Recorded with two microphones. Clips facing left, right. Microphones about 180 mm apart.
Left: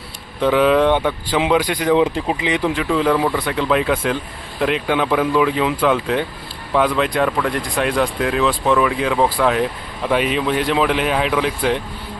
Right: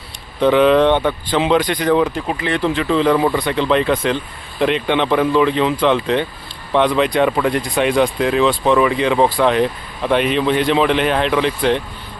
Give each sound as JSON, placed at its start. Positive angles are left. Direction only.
{"t": 0.3, "sound": "speech", "side_deg": 5}
{"t": 2.0, "sound": "speech", "side_deg": 20}